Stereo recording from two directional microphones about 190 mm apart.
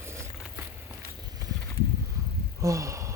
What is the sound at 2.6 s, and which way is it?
Speech, 15° right (ahead or behind).